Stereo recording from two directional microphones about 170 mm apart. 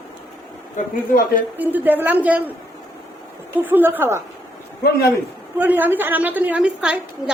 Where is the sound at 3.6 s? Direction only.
10° right (ahead or behind).